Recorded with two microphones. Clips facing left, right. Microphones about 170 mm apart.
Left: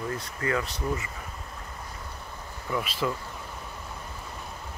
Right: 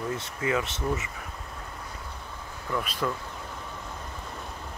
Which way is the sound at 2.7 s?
5° left (ahead or behind).